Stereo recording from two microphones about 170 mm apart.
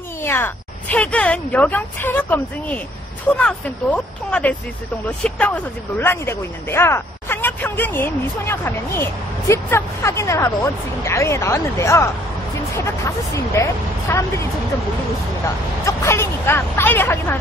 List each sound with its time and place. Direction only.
0.2 s speech: 15° left (ahead or behind)
15.8 s speech: 15° left (ahead or behind)